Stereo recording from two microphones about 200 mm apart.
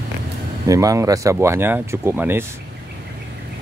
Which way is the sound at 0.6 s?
15° right (ahead or behind).